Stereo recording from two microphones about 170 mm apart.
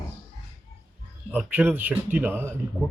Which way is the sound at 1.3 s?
10° right (ahead or behind).